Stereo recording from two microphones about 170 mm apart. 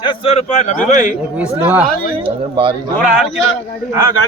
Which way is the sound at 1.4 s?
15° right (ahead or behind).